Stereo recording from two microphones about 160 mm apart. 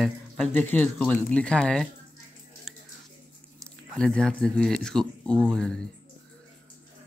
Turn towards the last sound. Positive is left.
turn(degrees=5)  # may be behind; listen again after turning